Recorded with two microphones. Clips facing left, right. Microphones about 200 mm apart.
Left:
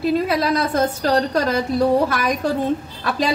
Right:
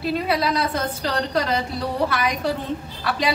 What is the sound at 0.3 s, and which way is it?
A woman's voice, 50° left (ahead or behind).